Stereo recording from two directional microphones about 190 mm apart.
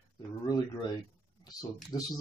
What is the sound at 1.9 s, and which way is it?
Speech, 20° left (ahead or behind).